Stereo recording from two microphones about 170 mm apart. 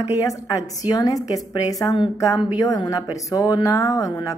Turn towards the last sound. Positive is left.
turn(degrees=20)  # may be behind; listen again after turning